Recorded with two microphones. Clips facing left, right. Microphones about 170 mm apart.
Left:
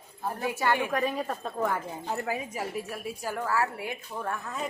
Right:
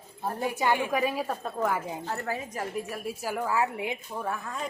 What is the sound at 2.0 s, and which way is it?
A woman's voice, 15° left (ahead or behind).